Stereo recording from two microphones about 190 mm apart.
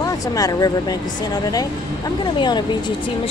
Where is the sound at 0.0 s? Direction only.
20° left (ahead or behind).